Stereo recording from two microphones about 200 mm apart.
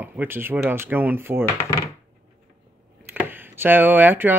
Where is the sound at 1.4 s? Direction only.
15° left (ahead or behind).